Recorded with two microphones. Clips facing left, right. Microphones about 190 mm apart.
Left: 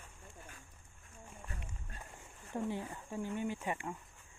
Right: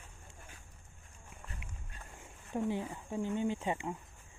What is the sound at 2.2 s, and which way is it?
Speech, 20° right (ahead or behind).